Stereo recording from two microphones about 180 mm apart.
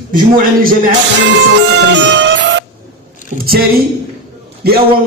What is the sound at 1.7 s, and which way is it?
Music, 80° right.